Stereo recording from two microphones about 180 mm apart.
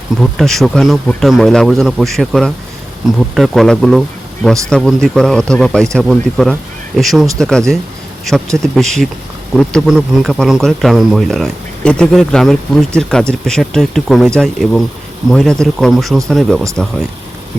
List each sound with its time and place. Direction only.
0.2 s speech: centre (ahead or behind)